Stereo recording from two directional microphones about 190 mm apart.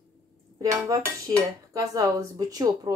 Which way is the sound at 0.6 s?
20° right (ahead or behind).